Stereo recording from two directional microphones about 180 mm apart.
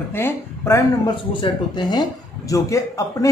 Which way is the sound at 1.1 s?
25° left (ahead or behind).